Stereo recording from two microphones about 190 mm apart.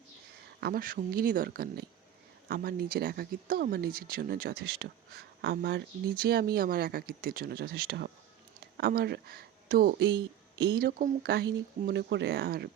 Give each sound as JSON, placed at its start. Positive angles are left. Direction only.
{"t": 0.6, "sound": "speech", "side_deg": -50}